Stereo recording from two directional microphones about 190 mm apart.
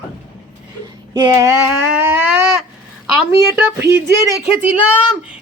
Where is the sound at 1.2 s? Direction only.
15° right (ahead or behind).